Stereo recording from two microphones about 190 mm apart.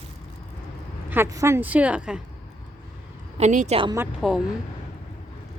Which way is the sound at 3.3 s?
40° right (ahead or behind).